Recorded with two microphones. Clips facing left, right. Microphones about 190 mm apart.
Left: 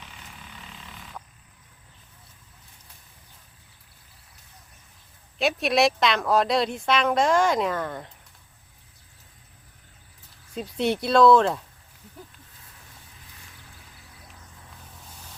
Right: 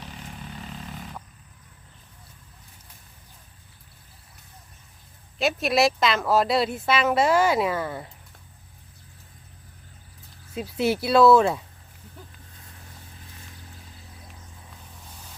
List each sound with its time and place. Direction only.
0.6 s vehicle: 45° right (ahead or behind)
5.4 s speech: centre (ahead or behind)
10.5 s speech: 5° right (ahead or behind)